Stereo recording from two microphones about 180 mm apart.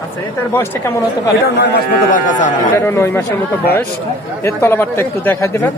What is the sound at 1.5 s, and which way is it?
Speech, 65° left (ahead or behind).